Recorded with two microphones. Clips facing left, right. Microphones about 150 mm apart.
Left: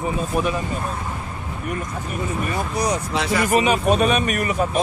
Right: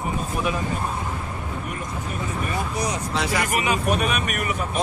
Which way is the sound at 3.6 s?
20° left (ahead or behind).